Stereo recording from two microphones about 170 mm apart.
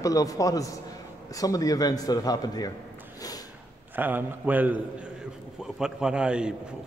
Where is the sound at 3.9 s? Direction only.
10° right (ahead or behind).